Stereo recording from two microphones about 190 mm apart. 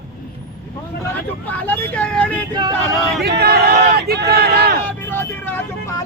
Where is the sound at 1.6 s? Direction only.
10° left (ahead or behind).